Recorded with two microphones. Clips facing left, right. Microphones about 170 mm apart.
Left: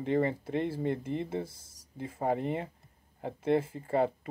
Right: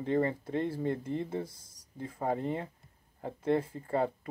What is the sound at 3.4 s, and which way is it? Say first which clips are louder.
Speech: left 1 dB; 5° left (ahead or behind).